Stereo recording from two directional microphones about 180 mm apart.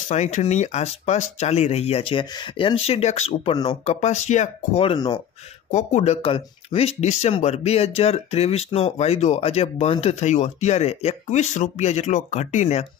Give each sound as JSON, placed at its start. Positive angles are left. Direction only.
{"t": 0.1, "sound": "speech", "side_deg": 40}
{"t": 5.7, "sound": "speech", "side_deg": 40}